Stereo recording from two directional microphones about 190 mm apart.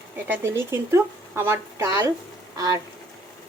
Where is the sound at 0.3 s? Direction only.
10° right (ahead or behind).